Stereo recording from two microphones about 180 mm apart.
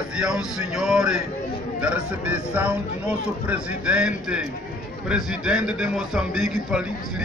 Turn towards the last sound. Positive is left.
turn(degrees=-5)  # may be behind; listen again after turning